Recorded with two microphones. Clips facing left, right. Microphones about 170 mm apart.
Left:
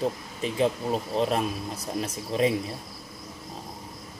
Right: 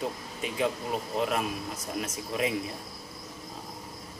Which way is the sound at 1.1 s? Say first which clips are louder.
Left 2 dB; 30° left (ahead or behind).